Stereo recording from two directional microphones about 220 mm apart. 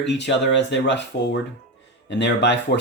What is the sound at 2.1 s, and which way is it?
Speech, 50° left (ahead or behind).